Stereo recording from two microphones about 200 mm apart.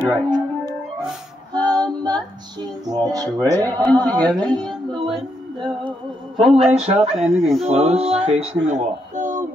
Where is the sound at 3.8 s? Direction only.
20° right (ahead or behind).